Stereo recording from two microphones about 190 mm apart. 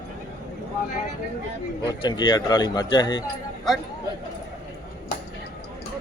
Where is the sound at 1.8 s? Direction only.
20° left (ahead or behind).